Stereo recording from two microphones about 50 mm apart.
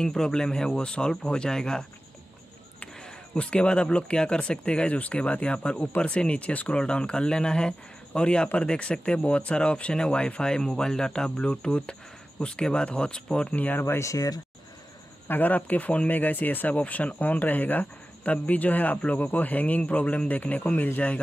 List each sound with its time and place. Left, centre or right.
0.0 s speech: centre
3.0 s speech: centre
6.8 s speech: centre
13.6 s speech: left
15.2 s speech: left